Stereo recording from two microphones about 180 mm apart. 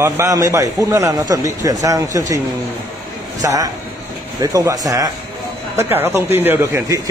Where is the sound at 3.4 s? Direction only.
20° right (ahead or behind).